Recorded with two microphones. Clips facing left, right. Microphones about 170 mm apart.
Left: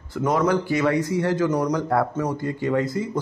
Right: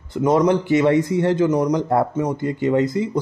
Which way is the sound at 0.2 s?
20° right (ahead or behind).